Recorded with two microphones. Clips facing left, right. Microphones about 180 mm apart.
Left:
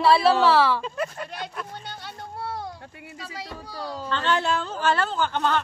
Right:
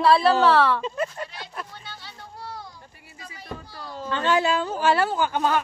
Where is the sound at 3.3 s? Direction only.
70° left (ahead or behind).